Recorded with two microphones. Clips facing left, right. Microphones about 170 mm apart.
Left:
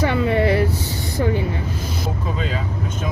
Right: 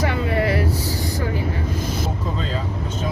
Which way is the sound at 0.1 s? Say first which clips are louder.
Left 3 dB; 25° left (ahead or behind).